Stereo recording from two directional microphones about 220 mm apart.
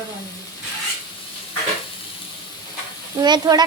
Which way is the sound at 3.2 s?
20° right (ahead or behind).